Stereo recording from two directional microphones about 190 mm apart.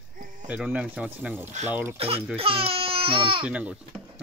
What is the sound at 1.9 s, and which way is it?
Speech, 30° right (ahead or behind).